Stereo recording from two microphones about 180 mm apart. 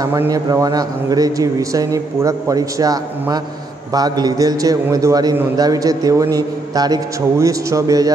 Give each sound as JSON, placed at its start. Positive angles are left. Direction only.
{"t": 0.0, "sound": "a man's voice", "side_deg": -20}